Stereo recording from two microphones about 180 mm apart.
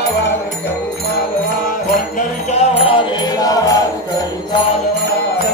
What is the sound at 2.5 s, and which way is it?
Music, 35° left (ahead or behind).